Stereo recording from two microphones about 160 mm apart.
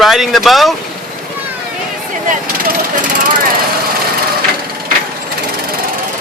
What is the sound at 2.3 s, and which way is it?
Jackhammer, 60° right (ahead or behind).